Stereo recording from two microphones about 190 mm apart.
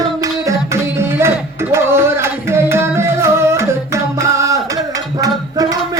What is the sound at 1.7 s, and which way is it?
Music, 15° right (ahead or behind).